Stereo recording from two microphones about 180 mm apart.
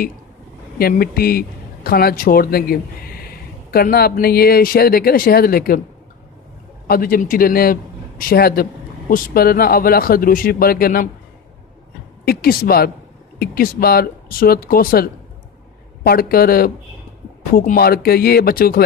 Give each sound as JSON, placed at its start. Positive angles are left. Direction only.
{"t": 0.7, "sound": "speech", "side_deg": 55}
{"t": 6.9, "sound": "speech", "side_deg": 55}
{"t": 12.3, "sound": "speech", "side_deg": 55}